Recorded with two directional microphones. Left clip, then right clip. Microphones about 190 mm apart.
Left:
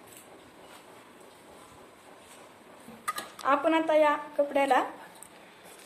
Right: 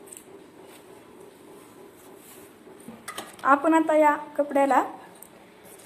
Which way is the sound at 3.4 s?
5° right (ahead or behind).